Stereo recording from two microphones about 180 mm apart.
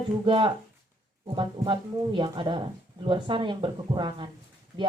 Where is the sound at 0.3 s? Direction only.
30° right (ahead or behind).